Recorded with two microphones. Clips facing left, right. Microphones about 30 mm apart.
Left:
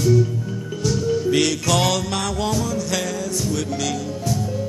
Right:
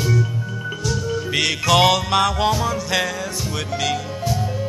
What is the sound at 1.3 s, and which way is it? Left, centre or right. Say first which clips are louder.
Music: right 6 dB; right.